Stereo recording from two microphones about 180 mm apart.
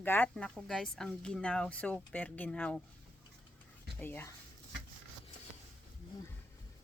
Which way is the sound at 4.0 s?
10° left (ahead or behind).